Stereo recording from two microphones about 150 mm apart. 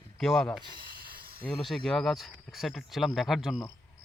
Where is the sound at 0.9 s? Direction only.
75° right (ahead or behind).